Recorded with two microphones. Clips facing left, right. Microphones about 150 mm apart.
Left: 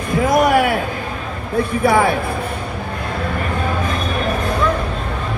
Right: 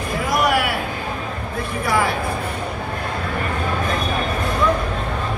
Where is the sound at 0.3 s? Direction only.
50° left (ahead or behind).